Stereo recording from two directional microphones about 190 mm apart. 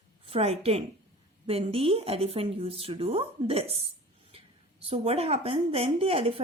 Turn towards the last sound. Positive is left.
turn(degrees=-30)  # may be behind; listen again after turning